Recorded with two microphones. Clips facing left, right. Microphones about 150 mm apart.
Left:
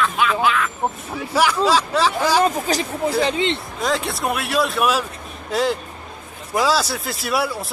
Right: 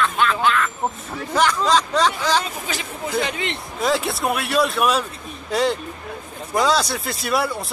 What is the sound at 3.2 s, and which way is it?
Speech, 25° left (ahead or behind).